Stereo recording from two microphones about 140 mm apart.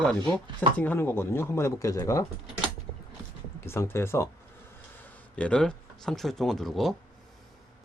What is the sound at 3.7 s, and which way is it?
Speech, 15° left (ahead or behind).